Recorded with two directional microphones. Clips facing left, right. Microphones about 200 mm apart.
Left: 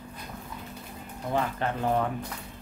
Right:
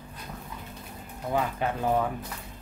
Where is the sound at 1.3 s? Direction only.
10° right (ahead or behind).